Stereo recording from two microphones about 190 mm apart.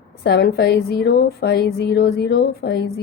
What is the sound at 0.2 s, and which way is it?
A woman's voice, 55° left (ahead or behind).